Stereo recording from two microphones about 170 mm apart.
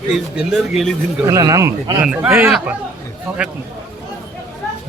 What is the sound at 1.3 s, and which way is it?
Speech, 20° right (ahead or behind).